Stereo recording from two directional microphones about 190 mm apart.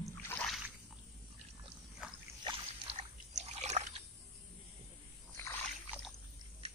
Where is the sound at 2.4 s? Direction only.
25° right (ahead or behind).